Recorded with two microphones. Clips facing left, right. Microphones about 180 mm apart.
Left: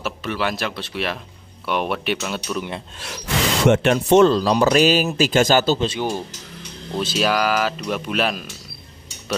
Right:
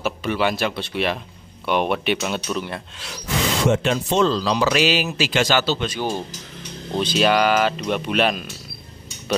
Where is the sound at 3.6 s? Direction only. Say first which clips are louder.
Left 6 dB; 60° left (ahead or behind).